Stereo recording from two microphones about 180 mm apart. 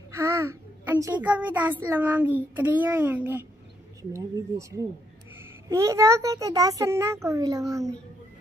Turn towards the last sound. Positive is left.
turn(degrees=-20)  # may be behind; listen again after turning